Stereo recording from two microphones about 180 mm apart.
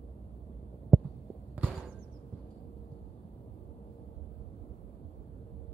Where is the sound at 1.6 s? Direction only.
5° right (ahead or behind).